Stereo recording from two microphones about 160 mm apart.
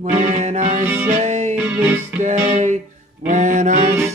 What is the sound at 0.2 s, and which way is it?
Music, 45° right (ahead or behind).